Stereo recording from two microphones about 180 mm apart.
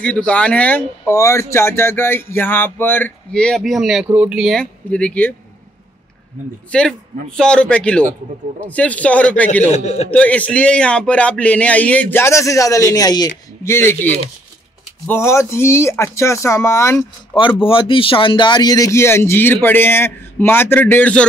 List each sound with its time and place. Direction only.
0.0 s speech: 5° left (ahead or behind)
6.7 s a man's voice: 5° left (ahead or behind)
9.7 s a man's voice: 40° left (ahead or behind)
10.1 s speech: 10° left (ahead or behind)
17.6 s speech: 30° left (ahead or behind); by 21.3 s 5° left (ahead or behind)